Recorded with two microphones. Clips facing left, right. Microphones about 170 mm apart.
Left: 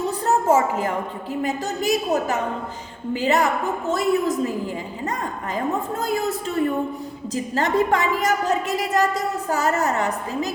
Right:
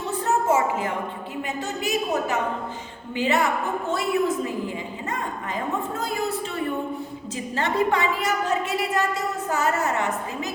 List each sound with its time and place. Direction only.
0.3 s a sound: 40° left (ahead or behind)
1.4 s a woman's voice: 40° left (ahead or behind)
7.3 s a woman's voice: 40° left (ahead or behind)